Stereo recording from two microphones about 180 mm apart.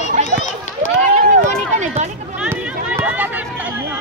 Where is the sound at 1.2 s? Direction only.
45° right (ahead or behind).